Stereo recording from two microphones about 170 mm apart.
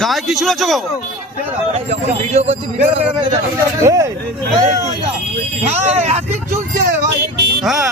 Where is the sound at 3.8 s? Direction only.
20° right (ahead or behind).